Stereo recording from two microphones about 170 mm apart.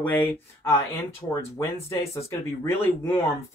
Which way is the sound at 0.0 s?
10° left (ahead or behind).